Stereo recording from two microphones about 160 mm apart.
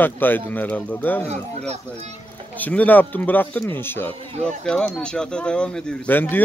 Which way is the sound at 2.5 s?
10° left (ahead or behind).